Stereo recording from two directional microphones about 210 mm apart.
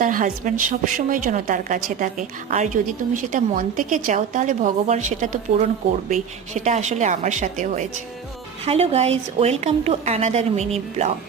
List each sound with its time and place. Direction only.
0.0 s a woman's voice: 40° right (ahead or behind)
6.5 s a woman's voice: 35° right (ahead or behind)